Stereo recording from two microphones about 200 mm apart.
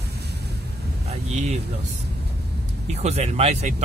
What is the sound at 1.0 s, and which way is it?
Speech, 35° right (ahead or behind).